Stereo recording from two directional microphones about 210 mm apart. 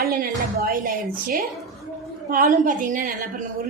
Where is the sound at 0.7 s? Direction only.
45° right (ahead or behind).